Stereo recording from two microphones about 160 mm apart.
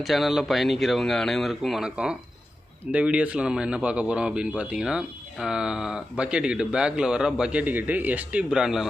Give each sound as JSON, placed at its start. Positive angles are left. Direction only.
{"t": 0.0, "sound": "speech", "side_deg": 0}